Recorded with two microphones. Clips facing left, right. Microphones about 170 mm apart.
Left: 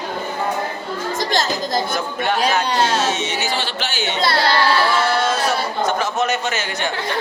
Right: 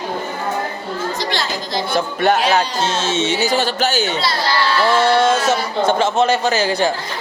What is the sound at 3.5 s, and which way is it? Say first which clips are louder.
Speech: right 7 dB; 40° right (ahead or behind).